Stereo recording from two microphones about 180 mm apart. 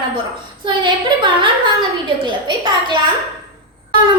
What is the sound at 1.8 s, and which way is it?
Speech, 25° right (ahead or behind).